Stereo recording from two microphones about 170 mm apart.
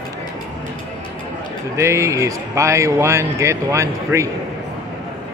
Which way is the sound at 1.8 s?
15° right (ahead or behind).